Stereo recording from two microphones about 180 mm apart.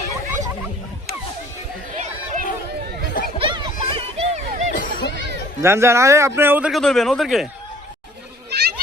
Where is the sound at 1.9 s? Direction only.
55° right (ahead or behind).